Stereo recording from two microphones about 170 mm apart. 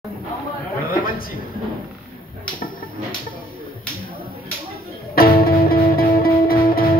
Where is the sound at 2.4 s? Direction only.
55° left (ahead or behind).